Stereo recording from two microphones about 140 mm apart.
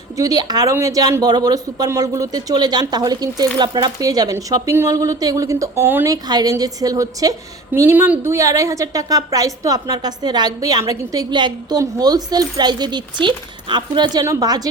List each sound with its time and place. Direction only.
0.2 s a woman's voice: 25° right (ahead or behind)
6.2 s a woman's voice: 30° right (ahead or behind)